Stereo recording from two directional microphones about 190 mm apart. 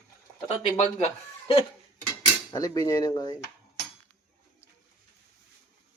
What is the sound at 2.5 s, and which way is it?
Cutlery, 20° left (ahead or behind).